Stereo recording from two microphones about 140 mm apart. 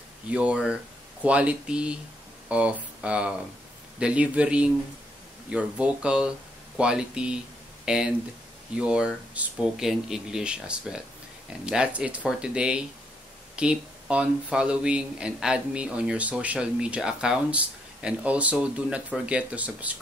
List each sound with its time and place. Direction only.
0.3 s speech: 10° right (ahead or behind)